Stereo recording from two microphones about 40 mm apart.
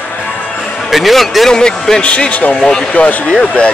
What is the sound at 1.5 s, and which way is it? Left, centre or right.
Speech, centre.